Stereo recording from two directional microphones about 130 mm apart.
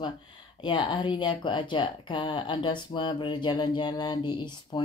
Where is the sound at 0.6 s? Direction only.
40° left (ahead or behind).